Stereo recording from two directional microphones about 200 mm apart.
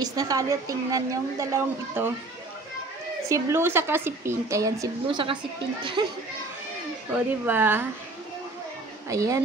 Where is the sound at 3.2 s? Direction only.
15° right (ahead or behind).